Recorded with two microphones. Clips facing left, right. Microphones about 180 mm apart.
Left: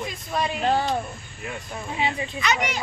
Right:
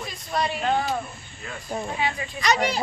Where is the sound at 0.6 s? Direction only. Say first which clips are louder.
Left 4 dB; 30° left (ahead or behind).